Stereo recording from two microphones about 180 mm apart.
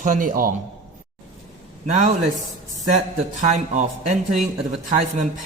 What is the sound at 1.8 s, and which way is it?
A man's voice, 45° right (ahead or behind).